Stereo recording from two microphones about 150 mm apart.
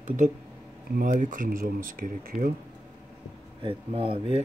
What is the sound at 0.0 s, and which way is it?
Speech, 55° right (ahead or behind).